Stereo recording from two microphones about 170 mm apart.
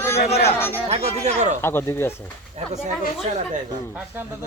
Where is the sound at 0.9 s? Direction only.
40° right (ahead or behind).